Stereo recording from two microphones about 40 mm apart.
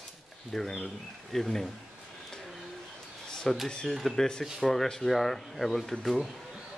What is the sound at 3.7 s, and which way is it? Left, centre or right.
Speech, left.